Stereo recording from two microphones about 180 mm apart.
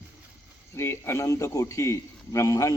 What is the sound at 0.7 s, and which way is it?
A man's voice, 15° left (ahead or behind).